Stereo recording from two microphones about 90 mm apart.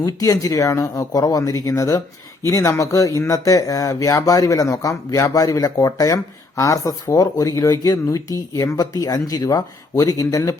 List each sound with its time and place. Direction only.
0.0 s speech: 40° left (ahead or behind)